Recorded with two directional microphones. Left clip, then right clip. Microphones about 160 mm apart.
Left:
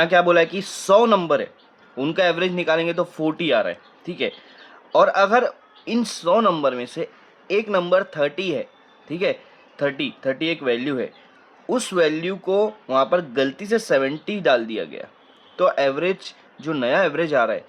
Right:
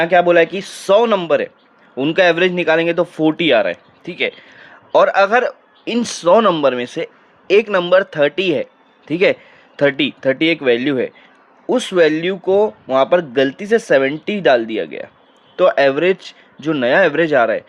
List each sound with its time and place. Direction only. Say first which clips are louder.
0.0 s speech: right 4 dB; 20° right (ahead or behind); by 7.8 s 40° right (ahead or behind)
7.8 s speech: right 6 dB; 30° right (ahead or behind)